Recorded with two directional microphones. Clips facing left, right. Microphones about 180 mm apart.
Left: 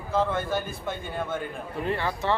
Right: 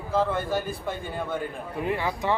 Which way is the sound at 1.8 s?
10° right (ahead or behind).